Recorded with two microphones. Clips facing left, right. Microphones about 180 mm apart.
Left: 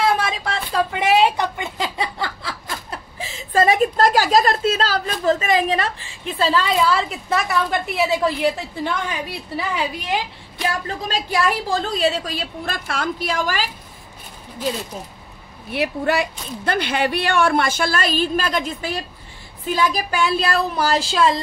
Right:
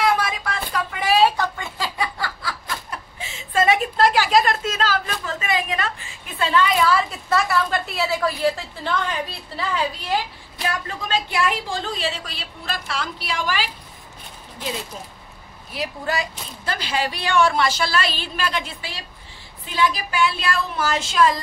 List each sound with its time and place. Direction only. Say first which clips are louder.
0.0 s a sound: left 1 dB; 25° left (ahead or behind)
10.6 s speech: left 3 dB; 35° left (ahead or behind)
15.7 s speech: left 6 dB; 65° left (ahead or behind); by 21.4 s 30° left (ahead or behind)